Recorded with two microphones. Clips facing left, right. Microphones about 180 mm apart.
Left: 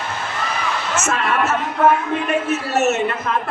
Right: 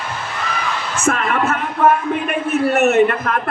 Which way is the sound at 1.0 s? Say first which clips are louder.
Right 4 dB; 60° right (ahead or behind).